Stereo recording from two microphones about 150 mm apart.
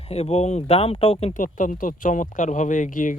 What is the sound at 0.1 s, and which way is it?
Speech, 45° left (ahead or behind).